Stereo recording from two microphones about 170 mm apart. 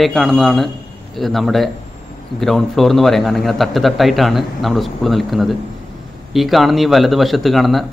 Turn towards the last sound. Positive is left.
turn(degrees=0)  # may be behind; listen again after turning